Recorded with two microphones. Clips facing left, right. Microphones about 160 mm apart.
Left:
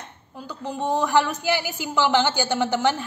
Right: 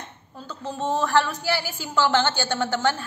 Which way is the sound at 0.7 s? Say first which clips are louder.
Left 1 dB; 15° left (ahead or behind).